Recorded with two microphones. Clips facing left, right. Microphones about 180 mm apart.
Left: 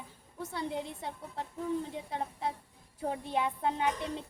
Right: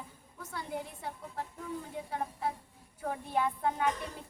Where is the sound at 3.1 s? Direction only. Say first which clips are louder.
Even; 20° left (ahead or behind).